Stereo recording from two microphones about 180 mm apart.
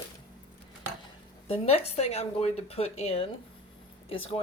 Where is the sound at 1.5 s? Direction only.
35° left (ahead or behind).